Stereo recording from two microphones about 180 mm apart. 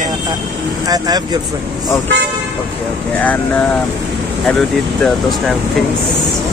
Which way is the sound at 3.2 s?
10° left (ahead or behind).